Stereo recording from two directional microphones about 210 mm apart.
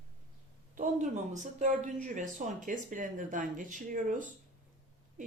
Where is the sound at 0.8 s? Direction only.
35° right (ahead or behind).